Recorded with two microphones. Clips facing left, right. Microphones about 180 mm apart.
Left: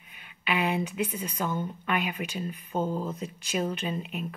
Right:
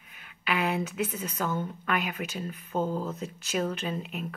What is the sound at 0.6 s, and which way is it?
Speech, 15° left (ahead or behind).